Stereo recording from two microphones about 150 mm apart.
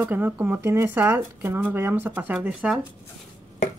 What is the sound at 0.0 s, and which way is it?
Speech, 10° right (ahead or behind).